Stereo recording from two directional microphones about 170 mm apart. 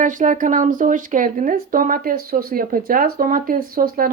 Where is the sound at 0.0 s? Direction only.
50° right (ahead or behind).